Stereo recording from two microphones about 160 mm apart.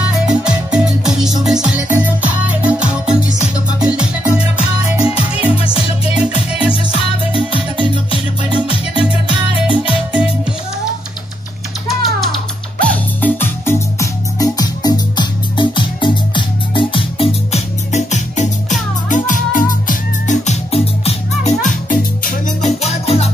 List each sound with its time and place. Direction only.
0.1 s music: 5° right (ahead or behind)
7.3 s music: 30° right (ahead or behind)
11.9 s music: centre (ahead or behind); by 23.3 s 40° left (ahead or behind)